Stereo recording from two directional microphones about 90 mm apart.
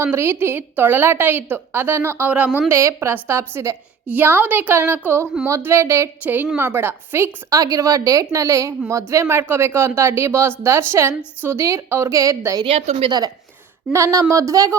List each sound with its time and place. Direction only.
0.0 s a woman's voice: 25° right (ahead or behind)
2.7 s a woman's voice: 30° right (ahead or behind)
4.1 s a woman's voice: 20° right (ahead or behind)
7.6 s a woman's voice: 40° right (ahead or behind)
12.6 s a woman's voice: 90° right
13.1 s a woman's voice: 45° right (ahead or behind)